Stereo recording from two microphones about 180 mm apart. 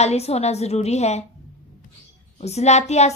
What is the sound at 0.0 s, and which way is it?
A woman's voice, 35° left (ahead or behind).